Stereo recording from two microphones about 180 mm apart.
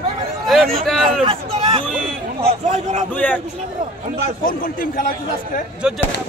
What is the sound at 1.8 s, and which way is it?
Speech, 5° left (ahead or behind).